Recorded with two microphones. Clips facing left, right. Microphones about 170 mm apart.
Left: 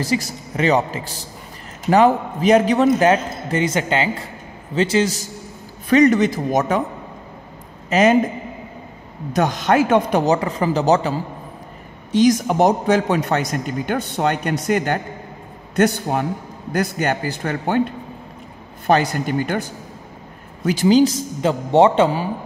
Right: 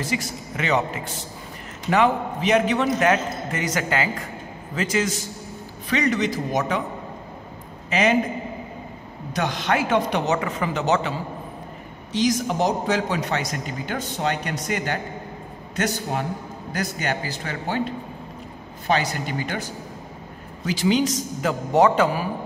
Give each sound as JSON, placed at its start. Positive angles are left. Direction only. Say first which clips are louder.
{"t": 0.0, "sound": "a man's voice", "louder": "left 5 dB", "side_deg": 35}
{"t": 5.9, "sound": "a man's voice", "louder": "left 9 dB", "side_deg": 45}
{"t": 7.9, "sound": "a man's voice", "louder": "left 6 dB", "side_deg": 45}
{"t": 9.3, "sound": "a man's voice", "louder": "left 6 dB", "side_deg": 45}
{"t": 12.1, "sound": "a man's voice", "louder": "left 7 dB", "side_deg": 50}
{"t": 18.9, "sound": "a man's voice", "louder": "left 6 dB", "side_deg": 50}
{"t": 20.6, "sound": "a man's voice", "louder": "left 5 dB", "side_deg": 50}
{"t": 20.9, "sound": "a man's voice", "louder": "left 9 dB", "side_deg": 30}